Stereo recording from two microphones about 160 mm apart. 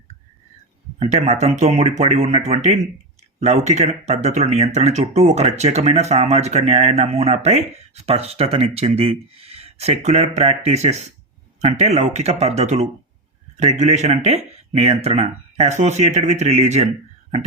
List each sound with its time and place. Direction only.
0.9 s speech: 45° right (ahead or behind)